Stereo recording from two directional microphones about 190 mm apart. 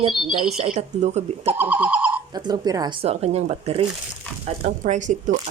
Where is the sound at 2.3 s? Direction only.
20° right (ahead or behind).